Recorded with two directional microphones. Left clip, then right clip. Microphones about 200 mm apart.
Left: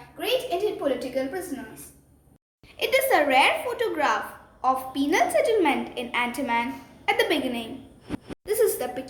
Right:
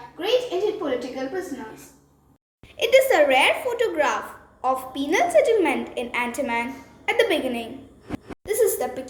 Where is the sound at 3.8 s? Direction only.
20° left (ahead or behind).